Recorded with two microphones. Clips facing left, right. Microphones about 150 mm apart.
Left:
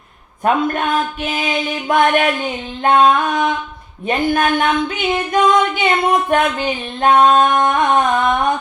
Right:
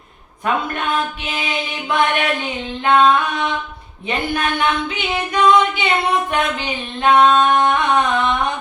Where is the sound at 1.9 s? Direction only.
45° left (ahead or behind).